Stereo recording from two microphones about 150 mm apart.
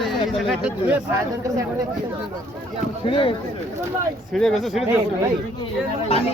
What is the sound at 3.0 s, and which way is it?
Speech, 35° left (ahead or behind).